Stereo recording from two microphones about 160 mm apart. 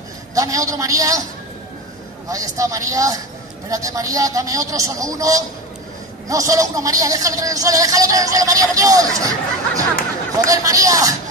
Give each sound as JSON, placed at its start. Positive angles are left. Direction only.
{"t": 0.3, "sound": "speech", "side_deg": -20}
{"t": 2.2, "sound": "speech", "side_deg": -20}